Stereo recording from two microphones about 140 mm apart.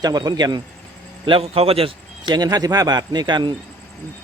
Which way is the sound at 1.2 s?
40° right (ahead or behind).